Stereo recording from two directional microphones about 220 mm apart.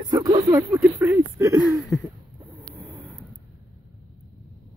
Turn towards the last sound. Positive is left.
turn(degrees=-10)  # may be behind; listen again after turning